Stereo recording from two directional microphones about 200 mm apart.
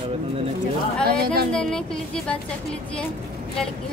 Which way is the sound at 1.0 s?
50° right (ahead or behind).